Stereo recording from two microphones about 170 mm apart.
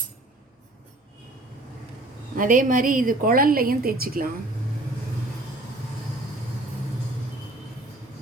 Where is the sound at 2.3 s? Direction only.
55° right (ahead or behind).